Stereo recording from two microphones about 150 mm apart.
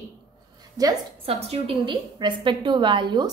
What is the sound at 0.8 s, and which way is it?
Speech, 25° right (ahead or behind).